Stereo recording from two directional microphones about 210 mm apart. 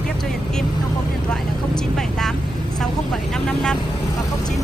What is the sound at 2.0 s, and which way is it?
Vehicle, centre (ahead or behind).